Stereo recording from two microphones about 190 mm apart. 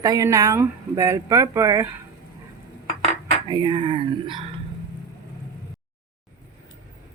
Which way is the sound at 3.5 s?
25° right (ahead or behind).